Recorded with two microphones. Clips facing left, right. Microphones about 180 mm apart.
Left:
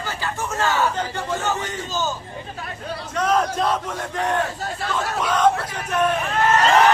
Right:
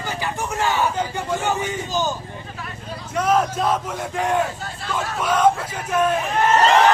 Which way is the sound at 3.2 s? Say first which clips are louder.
Right 1 dB; 5° right (ahead or behind).